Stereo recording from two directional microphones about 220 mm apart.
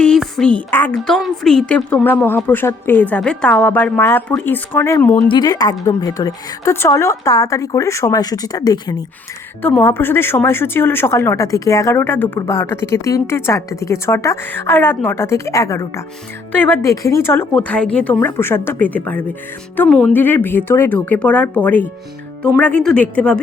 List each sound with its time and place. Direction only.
0.0 s speech: 5° left (ahead or behind)